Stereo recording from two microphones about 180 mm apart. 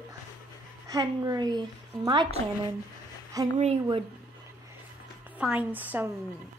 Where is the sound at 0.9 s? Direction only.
20° right (ahead or behind).